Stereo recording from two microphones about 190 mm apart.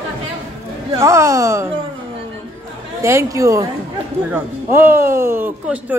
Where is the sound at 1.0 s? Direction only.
15° right (ahead or behind).